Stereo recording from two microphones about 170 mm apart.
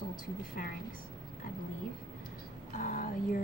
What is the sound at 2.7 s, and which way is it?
Speech, 50° left (ahead or behind).